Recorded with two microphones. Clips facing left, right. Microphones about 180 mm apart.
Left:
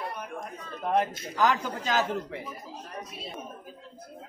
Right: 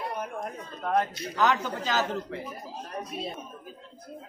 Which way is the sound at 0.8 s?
10° left (ahead or behind).